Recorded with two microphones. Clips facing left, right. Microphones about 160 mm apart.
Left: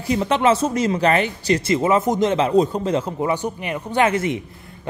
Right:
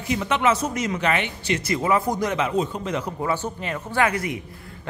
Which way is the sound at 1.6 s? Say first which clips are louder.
Left 3 dB; 25° left (ahead or behind).